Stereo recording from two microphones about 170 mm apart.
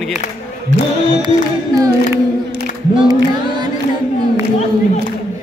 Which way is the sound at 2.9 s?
30° right (ahead or behind).